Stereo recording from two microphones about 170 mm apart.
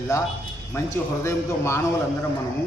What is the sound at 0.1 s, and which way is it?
A man's voice, 20° left (ahead or behind).